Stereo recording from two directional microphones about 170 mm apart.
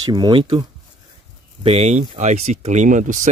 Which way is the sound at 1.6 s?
40° right (ahead or behind).